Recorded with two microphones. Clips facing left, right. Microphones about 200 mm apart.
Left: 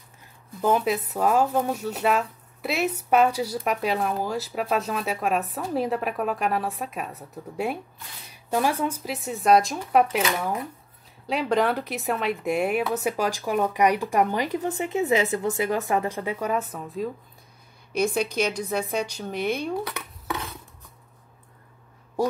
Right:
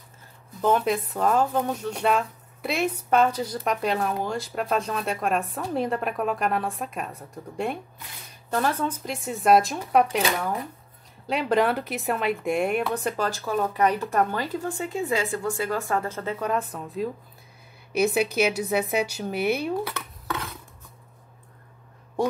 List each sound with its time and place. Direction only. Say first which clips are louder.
0.6 s speech: even; 5° left (ahead or behind)
19.9 s dishes: even; 15° left (ahead or behind)